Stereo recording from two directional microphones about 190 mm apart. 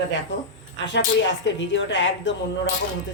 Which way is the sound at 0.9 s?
70° left (ahead or behind).